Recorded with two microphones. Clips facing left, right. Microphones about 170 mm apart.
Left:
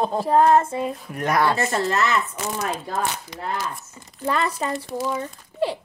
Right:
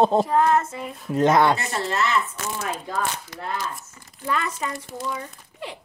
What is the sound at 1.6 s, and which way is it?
Speech, 40° left (ahead or behind).